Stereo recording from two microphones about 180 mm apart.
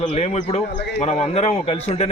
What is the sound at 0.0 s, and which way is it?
Speech, 40° left (ahead or behind).